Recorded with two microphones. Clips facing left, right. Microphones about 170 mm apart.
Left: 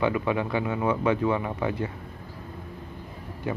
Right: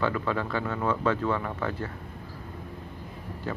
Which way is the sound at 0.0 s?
15° left (ahead or behind).